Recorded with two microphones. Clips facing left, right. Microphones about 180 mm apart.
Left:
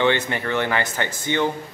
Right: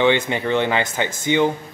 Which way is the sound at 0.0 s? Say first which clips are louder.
Right 3 dB; 15° right (ahead or behind).